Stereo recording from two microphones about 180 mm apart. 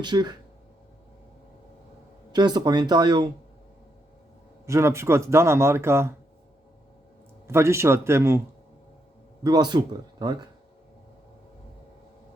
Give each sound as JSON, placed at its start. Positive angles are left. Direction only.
{"t": 0.0, "sound": "speech", "side_deg": -25}
{"t": 2.3, "sound": "speech", "side_deg": -25}
{"t": 4.6, "sound": "speech", "side_deg": -15}
{"t": 7.4, "sound": "speech", "side_deg": -15}
{"t": 9.4, "sound": "speech", "side_deg": -25}